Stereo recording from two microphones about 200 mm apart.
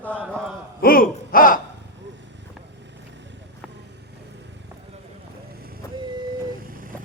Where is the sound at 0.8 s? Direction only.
45° left (ahead or behind).